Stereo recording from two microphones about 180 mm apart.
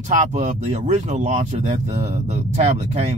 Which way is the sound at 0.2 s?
40° right (ahead or behind).